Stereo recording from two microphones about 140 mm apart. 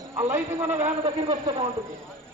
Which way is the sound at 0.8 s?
45° right (ahead or behind).